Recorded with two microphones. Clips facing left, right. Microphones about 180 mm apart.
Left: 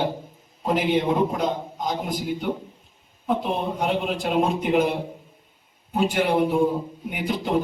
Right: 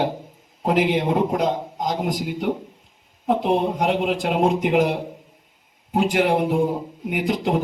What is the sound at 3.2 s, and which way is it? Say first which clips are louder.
A man's voice: right 5 dB; 80° right.